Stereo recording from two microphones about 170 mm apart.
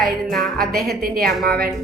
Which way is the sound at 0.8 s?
60° right (ahead or behind).